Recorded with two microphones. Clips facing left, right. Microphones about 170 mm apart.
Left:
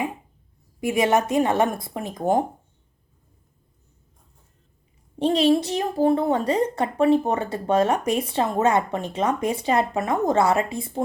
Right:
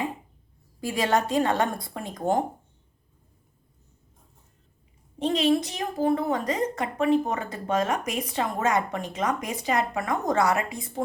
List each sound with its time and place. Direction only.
0.8 s a woman's voice: 20° left (ahead or behind)
5.2 s a woman's voice: 30° left (ahead or behind)